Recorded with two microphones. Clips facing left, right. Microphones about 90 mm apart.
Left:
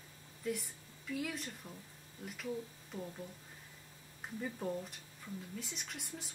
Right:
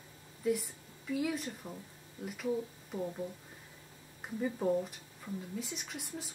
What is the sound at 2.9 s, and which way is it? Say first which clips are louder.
Speech: right 7 dB; 20° right (ahead or behind).